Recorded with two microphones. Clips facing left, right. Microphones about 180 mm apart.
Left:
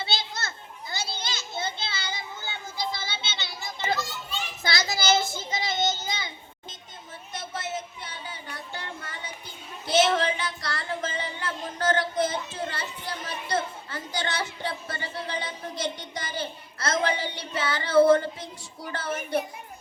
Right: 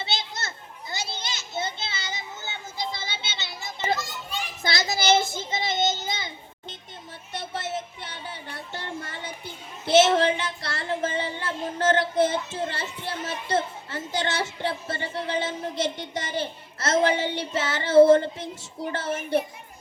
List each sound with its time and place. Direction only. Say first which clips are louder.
0.0 s children playing: even; 20° right (ahead or behind)
4.6 s child singing: right 2 dB; 20° right (ahead or behind)
8.0 s a sound: right 2 dB; 30° right (ahead or behind)
9.8 s child singing: right 4 dB; 25° right (ahead or behind)
12.2 s a child's voice: right 4 dB; 25° right (ahead or behind)